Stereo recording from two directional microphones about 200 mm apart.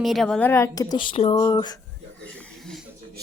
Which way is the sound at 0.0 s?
Centre (ahead or behind).